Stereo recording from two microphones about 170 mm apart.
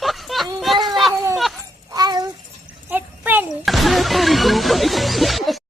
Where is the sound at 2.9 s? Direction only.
10° right (ahead or behind).